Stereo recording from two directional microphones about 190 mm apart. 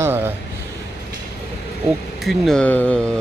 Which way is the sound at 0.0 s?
10° right (ahead or behind).